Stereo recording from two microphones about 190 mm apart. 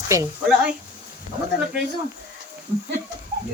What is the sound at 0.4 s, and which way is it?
Speech, 5° right (ahead or behind).